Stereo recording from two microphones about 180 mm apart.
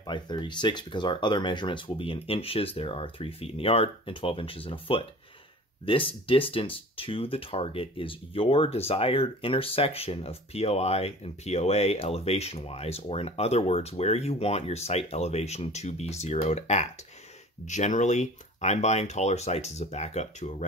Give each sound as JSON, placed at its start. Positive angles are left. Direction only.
{"t": 0.0, "sound": "speech", "side_deg": 25}